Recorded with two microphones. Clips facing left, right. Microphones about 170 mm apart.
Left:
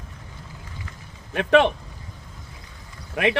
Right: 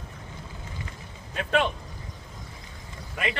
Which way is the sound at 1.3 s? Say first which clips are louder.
Left 8 dB; 85° left.